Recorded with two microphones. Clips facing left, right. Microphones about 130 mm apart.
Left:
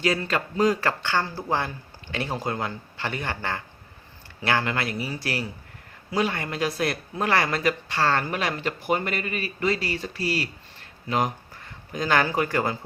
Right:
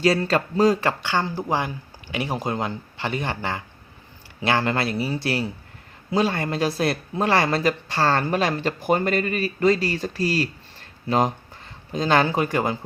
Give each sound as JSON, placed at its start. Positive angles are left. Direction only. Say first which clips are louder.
{"t": 0.0, "sound": "speech", "louder": "right 5 dB", "side_deg": -35}
{"t": 0.8, "sound": "speech", "louder": "right 2 dB", "side_deg": -20}
{"t": 4.6, "sound": "speech", "louder": "right 4 dB", "side_deg": -35}